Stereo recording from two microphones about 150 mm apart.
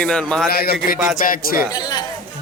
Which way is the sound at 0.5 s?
90° left.